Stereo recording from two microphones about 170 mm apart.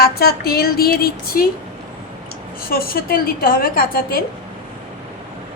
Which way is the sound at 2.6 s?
60° left (ahead or behind).